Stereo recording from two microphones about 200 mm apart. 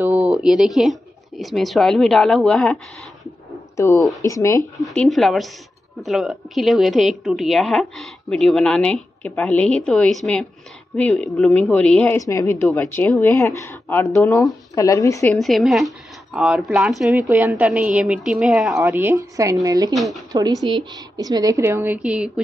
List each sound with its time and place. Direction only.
0.0 s a woman's voice: 5° right (ahead or behind); by 4.6 s 15° left (ahead or behind)
4.8 s a woman's voice: centre (ahead or behind)
15.3 s a woman's voice: centre (ahead or behind)
18.8 s a woman's voice: 10° right (ahead or behind)
19.9 s a woman's voice: centre (ahead or behind)
20.3 s a woman's voice: 20° right (ahead or behind)